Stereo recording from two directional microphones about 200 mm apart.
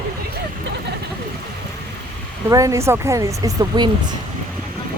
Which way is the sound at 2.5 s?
15° right (ahead or behind).